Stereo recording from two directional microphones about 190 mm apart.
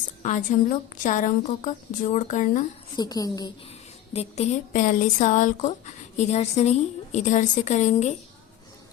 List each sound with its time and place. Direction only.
0.2 s a woman's voice: 40° left (ahead or behind)
2.9 s a woman's voice: 20° left (ahead or behind)
4.1 s speech: 35° left (ahead or behind)